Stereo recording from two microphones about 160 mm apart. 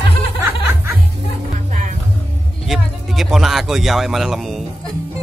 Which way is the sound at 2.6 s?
Centre (ahead or behind).